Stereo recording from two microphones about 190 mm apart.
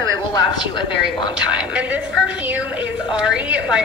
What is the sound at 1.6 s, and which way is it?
A woman's voice, 5° right (ahead or behind).